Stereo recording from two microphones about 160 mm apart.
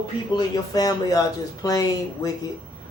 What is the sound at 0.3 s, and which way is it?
Speech, 25° left (ahead or behind).